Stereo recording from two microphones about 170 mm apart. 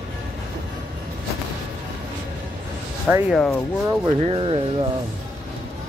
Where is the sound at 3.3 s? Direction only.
5° left (ahead or behind).